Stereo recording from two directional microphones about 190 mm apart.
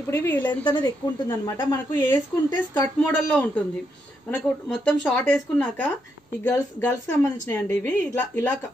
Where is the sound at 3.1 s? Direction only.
5° left (ahead or behind).